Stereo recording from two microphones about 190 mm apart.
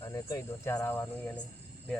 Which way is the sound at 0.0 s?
15° left (ahead or behind).